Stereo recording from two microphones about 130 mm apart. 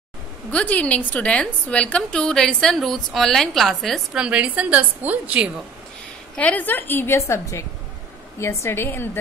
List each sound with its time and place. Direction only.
0.5 s a woman's voice: 10° left (ahead or behind); by 5.5 s 10° right (ahead or behind)
6.3 s a woman's voice: 10° left (ahead or behind)